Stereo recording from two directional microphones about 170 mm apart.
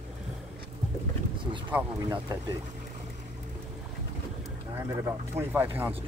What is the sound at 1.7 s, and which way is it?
Speech, 20° right (ahead or behind).